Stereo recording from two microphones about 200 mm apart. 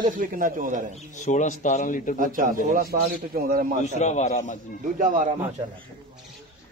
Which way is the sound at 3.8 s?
35° left (ahead or behind).